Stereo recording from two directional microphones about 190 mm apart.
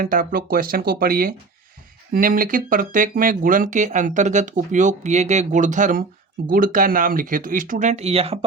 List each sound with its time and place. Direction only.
0.0 s speech: 50° right (ahead or behind); by 8.4 s 30° right (ahead or behind)